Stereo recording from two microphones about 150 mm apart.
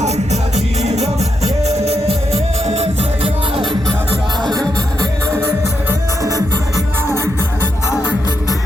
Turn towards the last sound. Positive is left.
turn(degrees=-25)  # may be behind; listen again after turning